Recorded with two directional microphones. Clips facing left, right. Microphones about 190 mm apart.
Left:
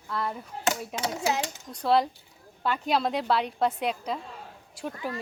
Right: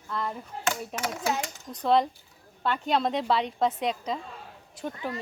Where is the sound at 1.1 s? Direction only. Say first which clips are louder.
Left 2 dB; 25° left (ahead or behind).